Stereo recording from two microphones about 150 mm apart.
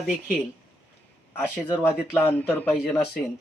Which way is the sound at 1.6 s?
15° left (ahead or behind).